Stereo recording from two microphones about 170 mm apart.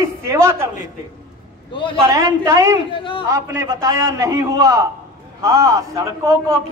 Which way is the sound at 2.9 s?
30° left (ahead or behind).